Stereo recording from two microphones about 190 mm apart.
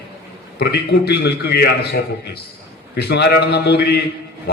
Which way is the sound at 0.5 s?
60° left (ahead or behind).